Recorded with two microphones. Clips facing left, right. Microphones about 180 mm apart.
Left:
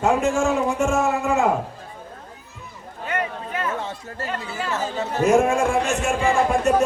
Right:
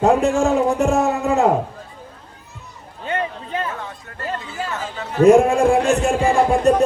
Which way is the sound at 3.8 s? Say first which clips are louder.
Left 2 dB; 25° left (ahead or behind).